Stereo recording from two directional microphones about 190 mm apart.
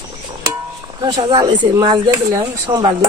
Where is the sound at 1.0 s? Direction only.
25° right (ahead or behind).